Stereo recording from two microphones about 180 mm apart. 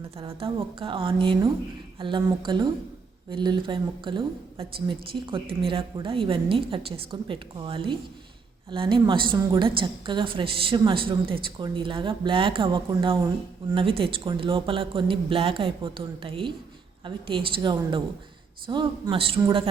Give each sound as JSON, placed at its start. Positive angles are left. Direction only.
{"t": 0.3, "sound": "a woman's voice", "side_deg": -30}